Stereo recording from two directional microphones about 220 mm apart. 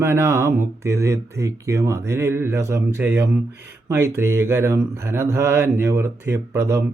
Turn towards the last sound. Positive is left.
turn(degrees=-15)  # may be behind; listen again after turning